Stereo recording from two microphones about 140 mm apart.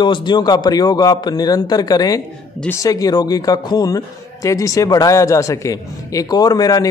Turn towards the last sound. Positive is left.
turn(degrees=25)  # may be behind; listen again after turning